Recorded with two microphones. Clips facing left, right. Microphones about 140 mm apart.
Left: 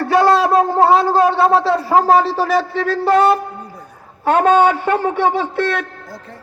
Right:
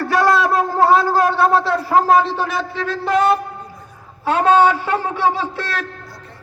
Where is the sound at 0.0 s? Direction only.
30° left (ahead or behind).